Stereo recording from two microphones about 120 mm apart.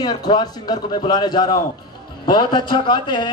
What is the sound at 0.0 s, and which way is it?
A man's voice, 35° left (ahead or behind).